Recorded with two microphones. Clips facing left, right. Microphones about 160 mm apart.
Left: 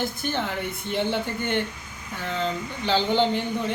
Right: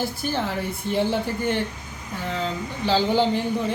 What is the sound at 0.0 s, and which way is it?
Speech, 5° right (ahead or behind).